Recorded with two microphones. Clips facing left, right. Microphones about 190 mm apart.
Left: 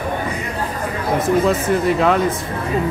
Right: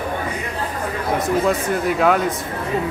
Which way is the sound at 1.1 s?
Centre (ahead or behind).